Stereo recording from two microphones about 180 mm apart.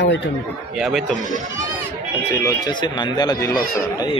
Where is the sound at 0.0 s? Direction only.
70° left (ahead or behind).